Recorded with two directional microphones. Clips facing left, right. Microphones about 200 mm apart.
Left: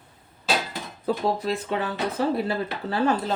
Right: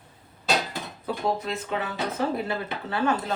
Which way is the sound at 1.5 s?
35° left (ahead or behind).